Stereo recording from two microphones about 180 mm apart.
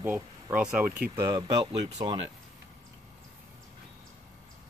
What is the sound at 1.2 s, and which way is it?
Speech, 20° right (ahead or behind).